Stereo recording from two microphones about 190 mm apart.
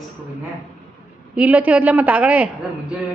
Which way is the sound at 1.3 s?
5° right (ahead or behind).